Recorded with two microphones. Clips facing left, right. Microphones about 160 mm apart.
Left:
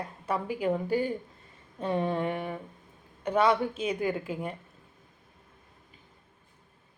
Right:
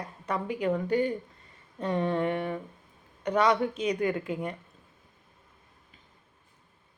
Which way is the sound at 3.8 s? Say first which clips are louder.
Right 2 dB; 30° left (ahead or behind).